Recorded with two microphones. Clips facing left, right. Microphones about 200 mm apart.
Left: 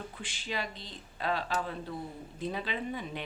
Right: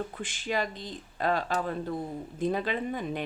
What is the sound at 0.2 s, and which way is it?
Speech, 50° right (ahead or behind).